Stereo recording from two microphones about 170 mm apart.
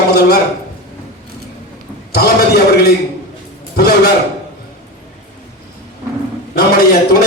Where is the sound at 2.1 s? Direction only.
70° left (ahead or behind).